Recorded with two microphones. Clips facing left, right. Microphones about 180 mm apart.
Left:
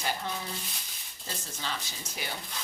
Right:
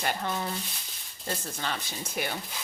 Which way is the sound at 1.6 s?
55° right (ahead or behind).